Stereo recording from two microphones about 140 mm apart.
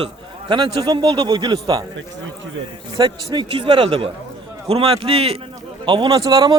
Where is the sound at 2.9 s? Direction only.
30° right (ahead or behind).